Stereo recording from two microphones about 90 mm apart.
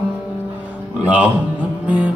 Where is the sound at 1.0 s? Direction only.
15° right (ahead or behind).